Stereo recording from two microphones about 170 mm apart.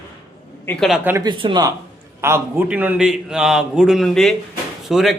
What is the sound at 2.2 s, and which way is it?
A man's voice, 15° right (ahead or behind).